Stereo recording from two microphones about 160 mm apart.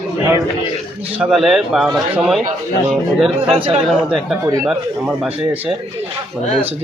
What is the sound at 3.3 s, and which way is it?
Speech, 35° right (ahead or behind).